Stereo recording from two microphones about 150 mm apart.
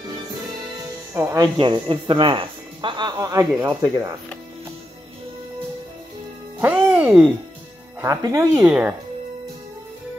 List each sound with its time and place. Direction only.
1.1 s speech: 20° right (ahead or behind)
1.6 s speech: 35° right (ahead or behind)
6.6 s speech: 10° right (ahead or behind)
8.0 s speech: 20° right (ahead or behind)
8.6 s speech: 10° right (ahead or behind)